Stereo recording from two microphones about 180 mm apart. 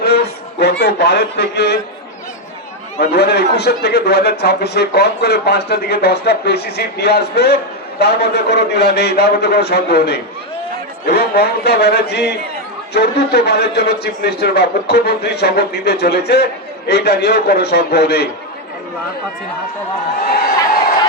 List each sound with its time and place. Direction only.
0.6 s a man's voice: 65° left (ahead or behind)
3.0 s speech: 65° left (ahead or behind)